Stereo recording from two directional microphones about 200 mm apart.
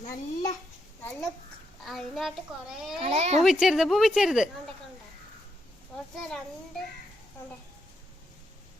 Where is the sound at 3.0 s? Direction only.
35° right (ahead or behind).